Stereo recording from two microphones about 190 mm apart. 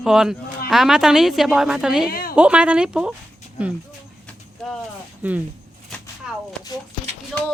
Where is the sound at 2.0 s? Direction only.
50° left (ahead or behind).